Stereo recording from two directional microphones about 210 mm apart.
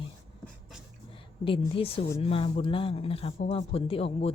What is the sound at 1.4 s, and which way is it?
Speech, 25° left (ahead or behind).